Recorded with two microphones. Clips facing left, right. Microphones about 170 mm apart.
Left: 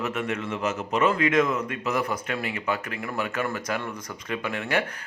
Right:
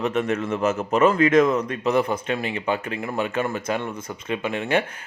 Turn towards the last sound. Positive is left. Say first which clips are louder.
# right 4 dB
turn(degrees=-20)  # may be behind; listen again after turning